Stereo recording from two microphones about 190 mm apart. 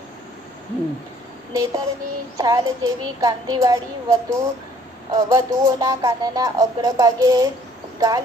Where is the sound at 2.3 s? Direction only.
20° right (ahead or behind).